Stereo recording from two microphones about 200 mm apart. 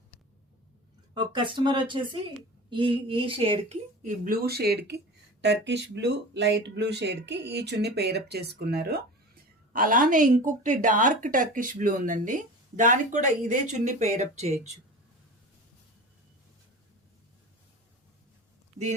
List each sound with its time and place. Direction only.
1.1 s speech: 25° right (ahead or behind)
4.0 s speech: 40° right (ahead or behind)